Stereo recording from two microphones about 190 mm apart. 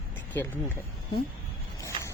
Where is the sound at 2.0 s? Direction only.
25° right (ahead or behind).